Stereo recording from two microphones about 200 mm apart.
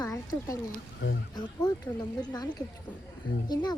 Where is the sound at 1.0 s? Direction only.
70° left (ahead or behind).